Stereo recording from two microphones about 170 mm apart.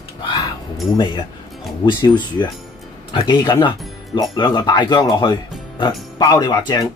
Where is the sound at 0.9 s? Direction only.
25° left (ahead or behind).